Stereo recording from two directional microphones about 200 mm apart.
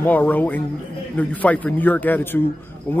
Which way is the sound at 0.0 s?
10° left (ahead or behind).